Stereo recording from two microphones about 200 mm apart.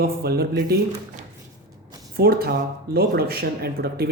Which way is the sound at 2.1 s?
50° right (ahead or behind).